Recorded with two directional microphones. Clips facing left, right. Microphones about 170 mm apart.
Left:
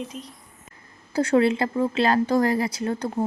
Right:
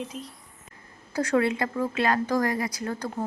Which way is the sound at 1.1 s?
25° left (ahead or behind).